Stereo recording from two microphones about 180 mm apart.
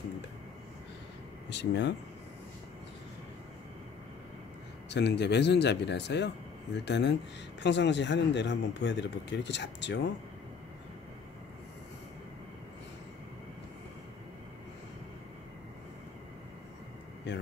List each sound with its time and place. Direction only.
1.5 s speech: 75° left (ahead or behind)
4.8 s speech: 70° left (ahead or behind)
17.3 s speech: 75° left (ahead or behind)